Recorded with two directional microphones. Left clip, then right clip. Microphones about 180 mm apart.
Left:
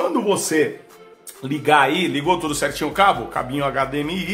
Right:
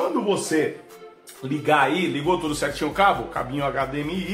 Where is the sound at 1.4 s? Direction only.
35° left (ahead or behind).